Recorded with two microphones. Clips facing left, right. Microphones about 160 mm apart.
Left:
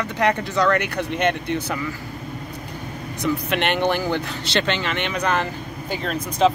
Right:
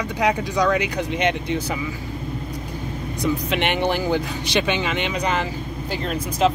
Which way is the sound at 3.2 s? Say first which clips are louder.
Even; 15° right (ahead or behind).